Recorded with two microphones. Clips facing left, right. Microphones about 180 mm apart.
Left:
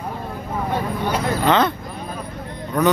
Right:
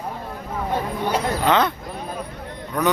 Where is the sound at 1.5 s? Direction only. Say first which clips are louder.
Left 2 dB; 10° right (ahead or behind).